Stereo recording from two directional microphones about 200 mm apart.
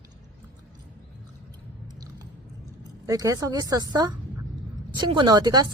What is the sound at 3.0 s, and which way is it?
A woman's voice, 15° right (ahead or behind).